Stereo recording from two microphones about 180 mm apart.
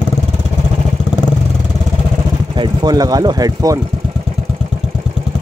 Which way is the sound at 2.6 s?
25° right (ahead or behind).